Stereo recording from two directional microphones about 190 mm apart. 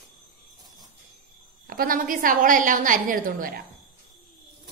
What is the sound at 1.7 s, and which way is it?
A woman's voice, 50° right (ahead or behind).